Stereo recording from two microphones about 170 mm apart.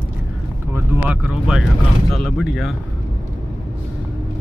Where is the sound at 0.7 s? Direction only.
10° right (ahead or behind).